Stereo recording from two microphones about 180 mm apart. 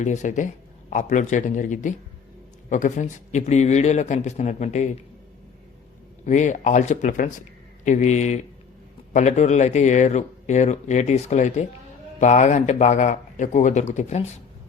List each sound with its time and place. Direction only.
0.0 s a man's voice: 40° left (ahead or behind)
6.2 s a man's voice: 40° left (ahead or behind)